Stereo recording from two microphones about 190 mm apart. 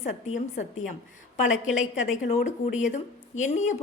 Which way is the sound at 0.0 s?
40° left (ahead or behind).